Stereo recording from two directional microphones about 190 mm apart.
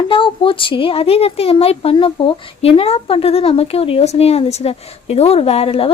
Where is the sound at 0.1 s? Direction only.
25° left (ahead or behind).